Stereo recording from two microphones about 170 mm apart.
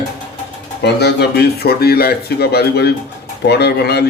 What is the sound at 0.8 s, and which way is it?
Speech, 75° left (ahead or behind).